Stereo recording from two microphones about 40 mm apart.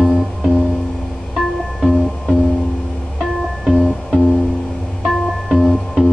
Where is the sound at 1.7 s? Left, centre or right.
Centre.